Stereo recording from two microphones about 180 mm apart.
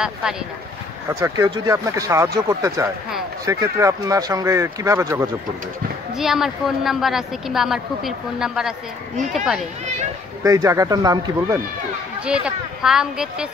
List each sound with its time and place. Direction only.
0.0 s a woman's voice: 5° right (ahead or behind)
1.0 s speech: 15° right (ahead or behind)
6.1 s a woman's voice: centre (ahead or behind)
10.4 s speech: 15° right (ahead or behind)
12.3 s a woman's voice: 5° right (ahead or behind)